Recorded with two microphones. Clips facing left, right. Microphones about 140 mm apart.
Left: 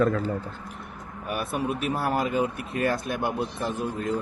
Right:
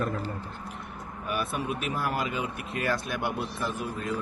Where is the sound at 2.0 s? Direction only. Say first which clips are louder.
Left 6 dB; 45° left (ahead or behind).